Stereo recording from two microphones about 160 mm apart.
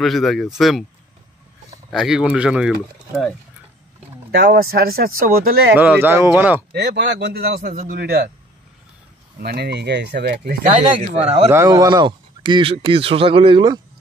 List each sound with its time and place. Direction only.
0.0 s speech: centre (ahead or behind)
1.9 s speech: centre (ahead or behind)
4.3 s speech: 90° right; by 5.5 s 65° right (ahead or behind)
5.8 s speech: 10° right (ahead or behind)
6.7 s speech: 90° right
9.4 s speech: 90° right; by 11.5 s 40° right (ahead or behind)
11.5 s speech: 20° right (ahead or behind)